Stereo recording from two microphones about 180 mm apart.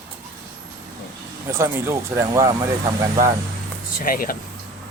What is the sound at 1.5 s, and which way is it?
Speech, 15° right (ahead or behind).